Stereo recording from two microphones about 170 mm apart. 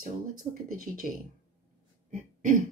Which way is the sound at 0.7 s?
55° right (ahead or behind).